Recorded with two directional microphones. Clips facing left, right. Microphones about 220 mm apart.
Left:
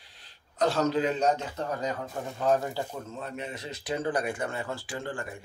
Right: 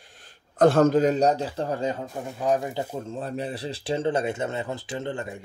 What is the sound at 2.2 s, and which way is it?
Speech, 10° right (ahead or behind).